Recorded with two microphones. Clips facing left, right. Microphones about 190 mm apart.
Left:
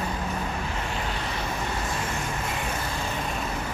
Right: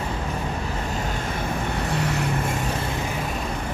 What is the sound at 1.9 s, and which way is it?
Vehicle, 70° right (ahead or behind).